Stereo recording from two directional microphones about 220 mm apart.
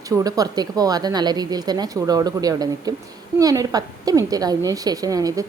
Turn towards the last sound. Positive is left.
turn(degrees=-15)  # may be behind; listen again after turning